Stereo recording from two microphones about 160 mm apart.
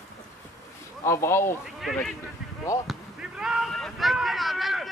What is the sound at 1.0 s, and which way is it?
Speech, 15° left (ahead or behind).